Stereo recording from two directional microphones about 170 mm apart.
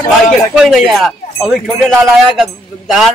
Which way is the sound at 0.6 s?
Centre (ahead or behind).